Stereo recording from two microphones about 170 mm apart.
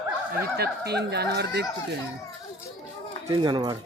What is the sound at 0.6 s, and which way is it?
Speech, 75° right (ahead or behind).